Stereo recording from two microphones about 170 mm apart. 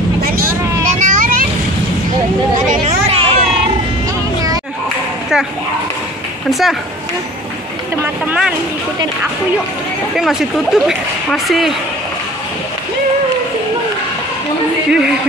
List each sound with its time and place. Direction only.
0.9 s vehicle: 50° right (ahead or behind)
2.7 s a sound: 40° right (ahead or behind)
6.5 s speech: centre (ahead or behind)
8.0 s speech: 5° right (ahead or behind)
10.1 s speech: centre (ahead or behind)
14.9 s speech: 5° right (ahead or behind)